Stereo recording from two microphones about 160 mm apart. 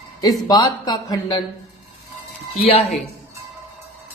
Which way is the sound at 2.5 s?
40° left (ahead or behind).